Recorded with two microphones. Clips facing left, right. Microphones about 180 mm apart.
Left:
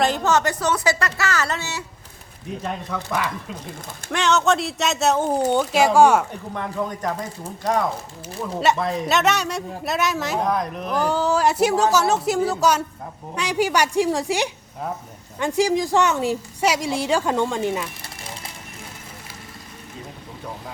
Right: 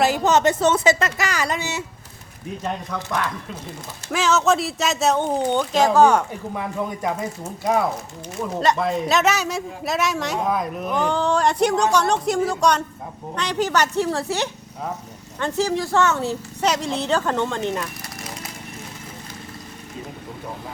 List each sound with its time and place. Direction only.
0.0 s a woman's voice: 10° right (ahead or behind)
0.3 s speech: 20° right (ahead or behind)
2.9 s a man's voice: 5° left (ahead or behind)
6.5 s a man's voice: 5° right (ahead or behind)